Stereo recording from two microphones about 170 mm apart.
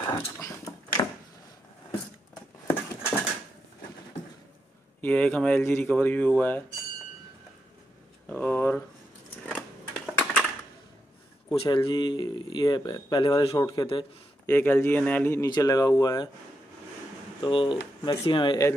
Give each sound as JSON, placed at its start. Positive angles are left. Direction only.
{"t": 0.0, "sound": "a sound", "side_deg": 25}
{"t": 5.0, "sound": "speech", "side_deg": 5}
{"t": 8.3, "sound": "a sound", "side_deg": 10}
{"t": 11.5, "sound": "speech", "side_deg": 30}
{"t": 14.4, "sound": "speech", "side_deg": 10}
{"t": 17.4, "sound": "speech", "side_deg": 30}